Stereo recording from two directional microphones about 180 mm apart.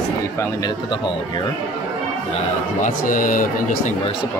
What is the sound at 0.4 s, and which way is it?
Speech, 20° left (ahead or behind).